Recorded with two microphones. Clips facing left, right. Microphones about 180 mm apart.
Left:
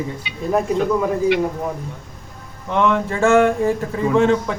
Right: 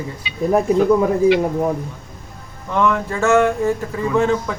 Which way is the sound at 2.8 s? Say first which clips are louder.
Left 1 dB; 30° left (ahead or behind).